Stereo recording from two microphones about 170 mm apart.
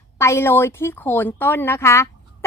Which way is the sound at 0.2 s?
15° left (ahead or behind).